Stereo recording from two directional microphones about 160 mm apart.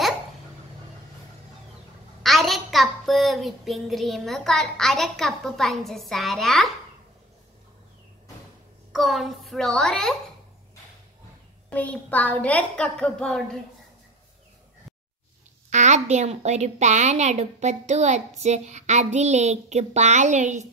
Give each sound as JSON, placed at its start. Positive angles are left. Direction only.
{"t": 2.2, "sound": "a woman's voice", "side_deg": 0}
{"t": 8.9, "sound": "a woman's voice", "side_deg": 0}
{"t": 11.7, "sound": "a woman's voice", "side_deg": 10}
{"t": 15.7, "sound": "a woman's voice", "side_deg": -45}